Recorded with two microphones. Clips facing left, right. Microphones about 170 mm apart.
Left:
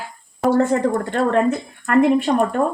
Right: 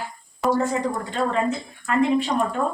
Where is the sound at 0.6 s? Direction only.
60° left (ahead or behind).